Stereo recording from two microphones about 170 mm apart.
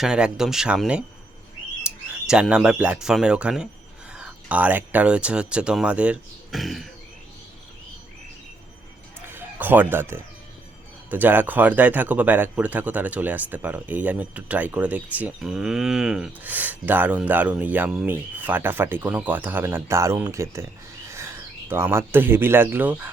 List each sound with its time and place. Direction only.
0.0 s speech: 5° right (ahead or behind)
9.2 s a man's voice: 10° right (ahead or behind)